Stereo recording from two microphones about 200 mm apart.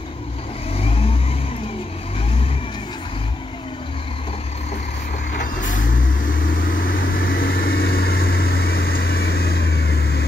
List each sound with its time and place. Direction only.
5.4 s vehicle: 40° left (ahead or behind)